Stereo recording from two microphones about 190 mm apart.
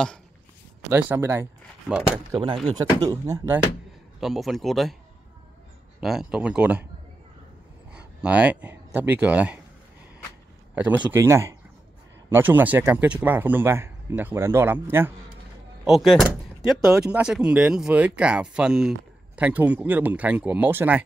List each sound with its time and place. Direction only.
0.8 s speech: 10° right (ahead or behind)
2.3 s speech: 25° right (ahead or behind)
4.2 s speech: centre (ahead or behind)
5.9 s a man's voice: 5° right (ahead or behind)
7.9 s speech: 5° right (ahead or behind)
10.7 s a man's voice: 10° right (ahead or behind)